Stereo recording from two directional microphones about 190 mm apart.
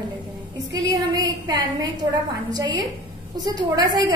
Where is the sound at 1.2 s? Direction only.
20° right (ahead or behind).